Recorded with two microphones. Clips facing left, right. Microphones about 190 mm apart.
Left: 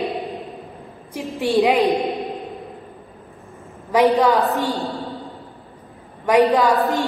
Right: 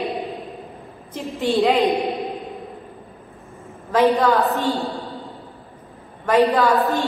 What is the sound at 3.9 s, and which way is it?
Speech, 15° left (ahead or behind).